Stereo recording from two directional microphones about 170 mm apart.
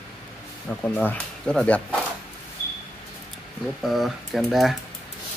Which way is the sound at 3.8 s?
Centre (ahead or behind).